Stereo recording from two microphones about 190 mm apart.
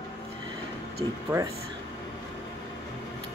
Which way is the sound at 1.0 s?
20° right (ahead or behind).